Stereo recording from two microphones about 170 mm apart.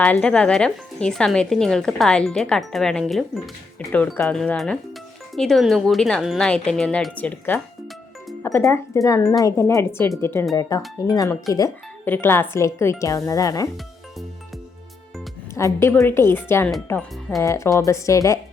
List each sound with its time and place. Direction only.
0.0 s a woman's voice: 5° left (ahead or behind)
15.5 s a woman's voice: 15° left (ahead or behind)
17.4 s a woman's voice: 15° left (ahead or behind)